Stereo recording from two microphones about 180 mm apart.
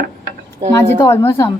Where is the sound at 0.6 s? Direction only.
35° right (ahead or behind).